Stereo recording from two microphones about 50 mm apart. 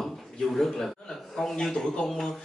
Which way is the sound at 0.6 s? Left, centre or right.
Centre.